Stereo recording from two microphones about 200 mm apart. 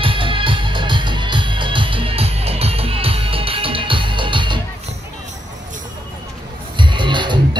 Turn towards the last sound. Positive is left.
turn(degrees=-25)  # may be behind; listen again after turning